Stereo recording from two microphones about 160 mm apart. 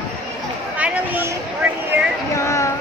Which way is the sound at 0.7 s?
10° right (ahead or behind).